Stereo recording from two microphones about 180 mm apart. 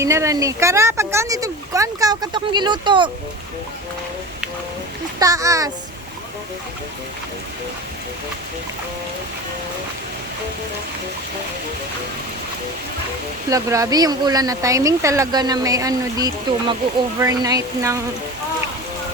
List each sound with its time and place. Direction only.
0.0 s speech: 15° right (ahead or behind)
5.2 s speech: 20° right (ahead or behind)
13.5 s speech: 15° right (ahead or behind)